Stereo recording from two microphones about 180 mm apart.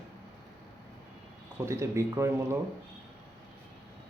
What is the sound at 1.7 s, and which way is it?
Speech, 15° right (ahead or behind).